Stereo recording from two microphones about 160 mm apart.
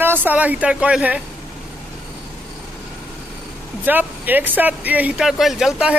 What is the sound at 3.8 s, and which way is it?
Speech, 10° right (ahead or behind).